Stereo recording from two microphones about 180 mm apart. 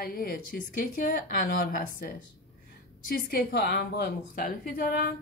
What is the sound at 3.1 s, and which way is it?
A woman's voice, 60° left (ahead or behind).